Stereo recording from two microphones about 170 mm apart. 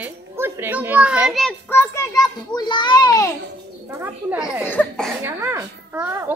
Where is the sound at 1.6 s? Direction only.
15° left (ahead or behind).